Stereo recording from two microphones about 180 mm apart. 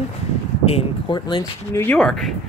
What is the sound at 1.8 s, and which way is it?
Speech, 5° left (ahead or behind).